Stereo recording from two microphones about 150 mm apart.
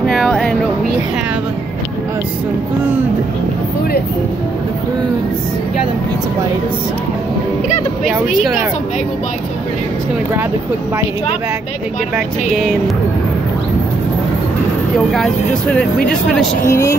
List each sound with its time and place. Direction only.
0.0 s a sound: centre (ahead or behind)
8.1 s speech: centre (ahead or behind)
12.5 s speech: centre (ahead or behind)
15.1 s speech: 5° left (ahead or behind)
16.6 s speech: 20° left (ahead or behind)